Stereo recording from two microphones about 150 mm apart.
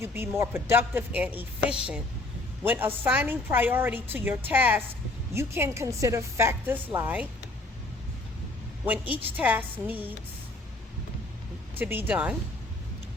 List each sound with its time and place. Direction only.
0.0 s a woman's voice: 15° right (ahead or behind)
2.6 s a woman's voice: 15° right (ahead or behind)
8.8 s a woman's voice: 10° right (ahead or behind)
11.8 s a woman's voice: 15° right (ahead or behind)